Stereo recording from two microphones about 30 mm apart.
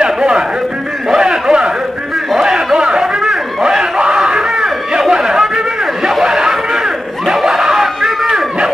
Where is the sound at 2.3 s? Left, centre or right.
Right.